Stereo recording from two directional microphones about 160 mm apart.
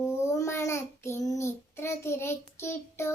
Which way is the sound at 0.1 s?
15° left (ahead or behind).